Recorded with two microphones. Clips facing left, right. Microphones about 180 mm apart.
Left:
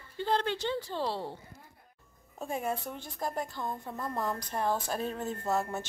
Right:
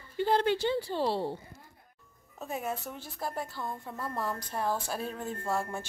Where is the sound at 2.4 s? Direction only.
5° right (ahead or behind).